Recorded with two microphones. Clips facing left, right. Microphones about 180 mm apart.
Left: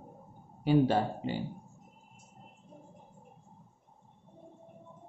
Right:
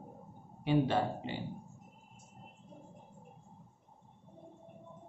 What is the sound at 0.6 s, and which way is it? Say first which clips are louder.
Speech: left 4 dB; 40° left (ahead or behind).